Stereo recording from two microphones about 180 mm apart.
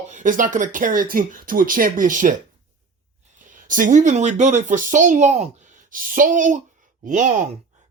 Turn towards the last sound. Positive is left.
turn(degrees=-45)  # may be behind; listen again after turning